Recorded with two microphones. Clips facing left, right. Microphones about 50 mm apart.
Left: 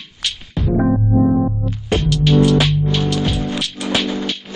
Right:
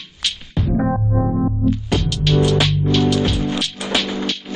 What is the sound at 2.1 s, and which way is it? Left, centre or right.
Music, centre.